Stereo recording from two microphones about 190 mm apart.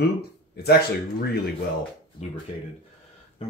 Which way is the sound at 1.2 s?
55° left (ahead or behind).